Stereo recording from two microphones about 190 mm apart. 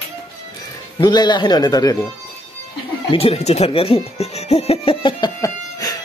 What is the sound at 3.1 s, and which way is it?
Speech, 30° left (ahead or behind).